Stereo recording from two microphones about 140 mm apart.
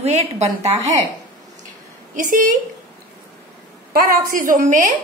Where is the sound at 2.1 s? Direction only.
70° right (ahead or behind).